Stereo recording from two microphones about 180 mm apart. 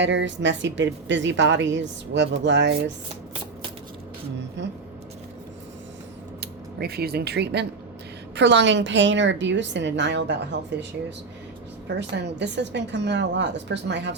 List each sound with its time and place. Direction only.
0.0 s a woman's voice: 85° right
4.6 s a sound: 80° right
6.4 s a woman's voice: 60° right (ahead or behind)
11.9 s speech: 75° right (ahead or behind)